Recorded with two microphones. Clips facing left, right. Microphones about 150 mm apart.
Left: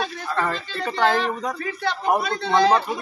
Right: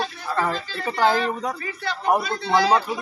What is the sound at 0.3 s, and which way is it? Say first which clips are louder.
Speech: right 2 dB; 10° right (ahead or behind).